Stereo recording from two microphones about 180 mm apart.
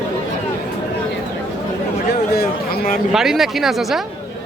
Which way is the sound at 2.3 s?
55° left (ahead or behind).